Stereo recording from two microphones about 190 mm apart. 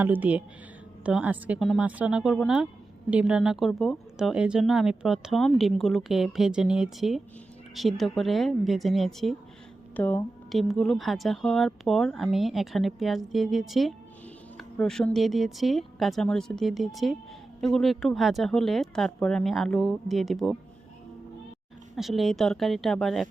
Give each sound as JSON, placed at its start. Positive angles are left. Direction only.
{"t": 0.0, "sound": "speech", "side_deg": -10}
{"t": 21.9, "sound": "speech", "side_deg": 0}